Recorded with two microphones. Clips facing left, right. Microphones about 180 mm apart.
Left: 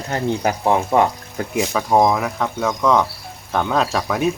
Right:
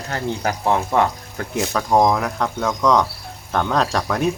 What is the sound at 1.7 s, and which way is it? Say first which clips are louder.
Speech: even; 5° left (ahead or behind).